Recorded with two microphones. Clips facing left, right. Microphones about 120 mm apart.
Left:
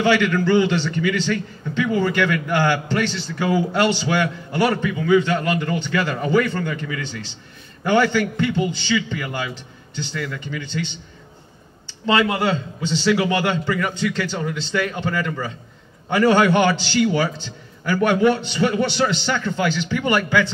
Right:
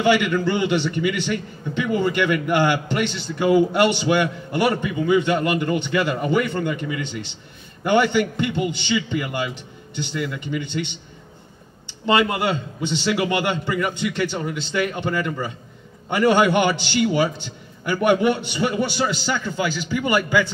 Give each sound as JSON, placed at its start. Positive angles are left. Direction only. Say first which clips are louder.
{"t": 0.0, "sound": "a man's voice", "louder": "even", "side_deg": -15}
{"t": 12.1, "sound": "a man's voice", "louder": "left 1 dB", "side_deg": -15}